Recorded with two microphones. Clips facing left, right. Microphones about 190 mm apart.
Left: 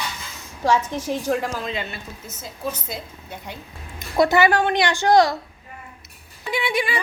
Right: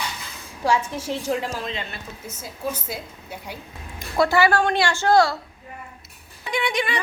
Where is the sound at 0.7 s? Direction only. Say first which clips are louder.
Left 2 dB; 10° right (ahead or behind).